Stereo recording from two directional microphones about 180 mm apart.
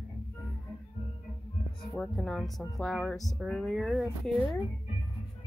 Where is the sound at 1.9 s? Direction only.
5° left (ahead or behind).